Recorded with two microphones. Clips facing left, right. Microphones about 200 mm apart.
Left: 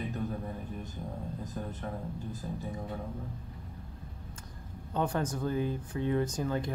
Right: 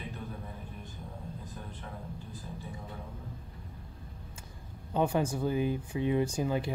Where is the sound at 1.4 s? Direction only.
40° left (ahead or behind).